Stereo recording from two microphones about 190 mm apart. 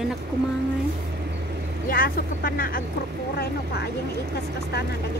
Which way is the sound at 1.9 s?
50° left (ahead or behind).